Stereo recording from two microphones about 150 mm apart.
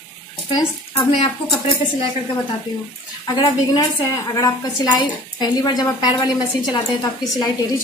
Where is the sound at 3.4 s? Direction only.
25° left (ahead or behind).